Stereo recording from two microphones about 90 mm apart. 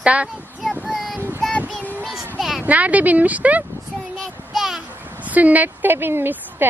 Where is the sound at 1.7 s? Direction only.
15° left (ahead or behind).